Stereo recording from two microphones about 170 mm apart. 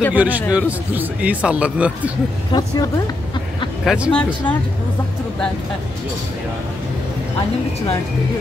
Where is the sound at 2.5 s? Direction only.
25° left (ahead or behind).